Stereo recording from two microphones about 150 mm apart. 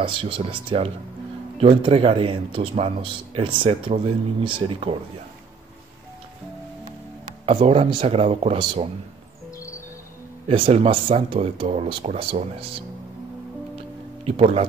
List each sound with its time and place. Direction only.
0.0 s speech: 35° right (ahead or behind)
7.6 s speech: 40° right (ahead or behind)
10.5 s speech: 40° right (ahead or behind)
14.2 s speech: 40° right (ahead or behind)